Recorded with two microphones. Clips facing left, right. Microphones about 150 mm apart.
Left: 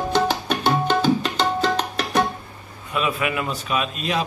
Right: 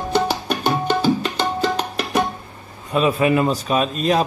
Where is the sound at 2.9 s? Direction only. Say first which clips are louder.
Right 7 dB; 35° right (ahead or behind).